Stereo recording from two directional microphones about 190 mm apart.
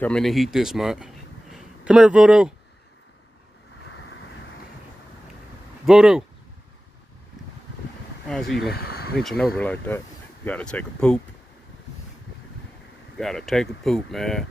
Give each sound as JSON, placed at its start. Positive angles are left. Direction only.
{"t": 0.0, "sound": "a man's voice", "side_deg": 5}
{"t": 5.9, "sound": "speech", "side_deg": -5}
{"t": 8.3, "sound": "speech", "side_deg": 0}
{"t": 8.7, "sound": "speech", "side_deg": 55}
{"t": 9.2, "sound": "speech", "side_deg": 0}
{"t": 13.2, "sound": "speech", "side_deg": 0}